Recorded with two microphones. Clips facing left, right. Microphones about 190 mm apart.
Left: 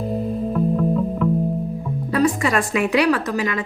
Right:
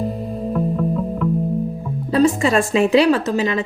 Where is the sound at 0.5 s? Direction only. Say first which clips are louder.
Even; centre (ahead or behind).